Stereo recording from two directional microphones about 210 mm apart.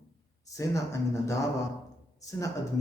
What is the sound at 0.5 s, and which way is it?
Speech, 15° left (ahead or behind).